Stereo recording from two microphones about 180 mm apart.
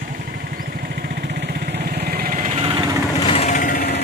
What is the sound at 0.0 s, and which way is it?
Vehicle, 55° right (ahead or behind).